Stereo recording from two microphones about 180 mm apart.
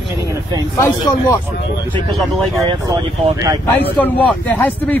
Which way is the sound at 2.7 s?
20° right (ahead or behind).